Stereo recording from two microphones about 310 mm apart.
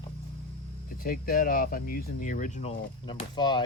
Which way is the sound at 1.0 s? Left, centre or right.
Left.